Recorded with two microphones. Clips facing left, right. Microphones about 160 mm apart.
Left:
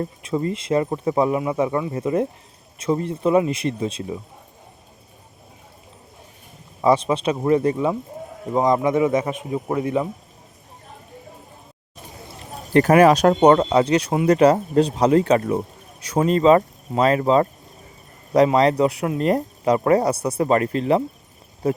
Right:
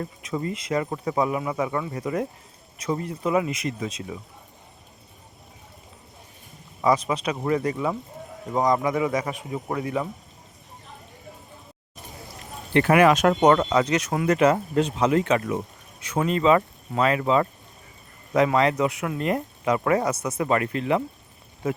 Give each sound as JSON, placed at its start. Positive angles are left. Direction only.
{"t": 0.0, "sound": "speech", "side_deg": 30}
{"t": 6.8, "sound": "speech", "side_deg": 30}
{"t": 12.7, "sound": "speech", "side_deg": 40}